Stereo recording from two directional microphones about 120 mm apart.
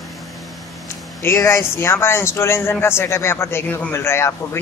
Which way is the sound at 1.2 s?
20° left (ahead or behind).